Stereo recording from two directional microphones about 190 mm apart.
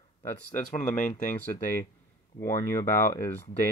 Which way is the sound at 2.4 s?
15° left (ahead or behind).